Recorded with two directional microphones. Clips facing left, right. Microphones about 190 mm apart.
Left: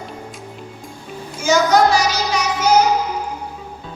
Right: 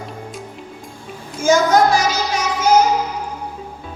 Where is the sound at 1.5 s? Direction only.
50° right (ahead or behind).